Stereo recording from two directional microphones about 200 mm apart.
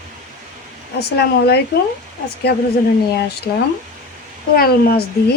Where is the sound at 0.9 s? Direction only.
55° left (ahead or behind).